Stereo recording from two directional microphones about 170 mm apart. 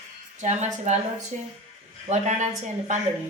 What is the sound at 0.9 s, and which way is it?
Speech, 45° right (ahead or behind).